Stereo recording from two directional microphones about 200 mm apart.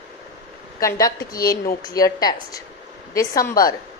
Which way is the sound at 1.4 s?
15° left (ahead or behind).